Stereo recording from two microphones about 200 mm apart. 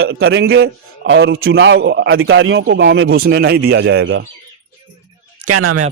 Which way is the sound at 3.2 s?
50° right (ahead or behind).